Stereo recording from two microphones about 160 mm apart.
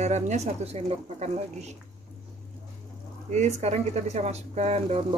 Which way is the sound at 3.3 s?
45° right (ahead or behind).